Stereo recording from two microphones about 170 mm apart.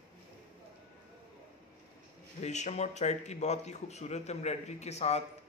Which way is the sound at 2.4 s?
45° left (ahead or behind).